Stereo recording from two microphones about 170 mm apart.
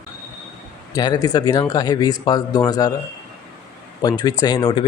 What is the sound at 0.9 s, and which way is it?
Speech, 20° left (ahead or behind).